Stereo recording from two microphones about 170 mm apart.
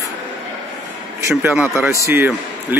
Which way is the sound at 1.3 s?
5° right (ahead or behind).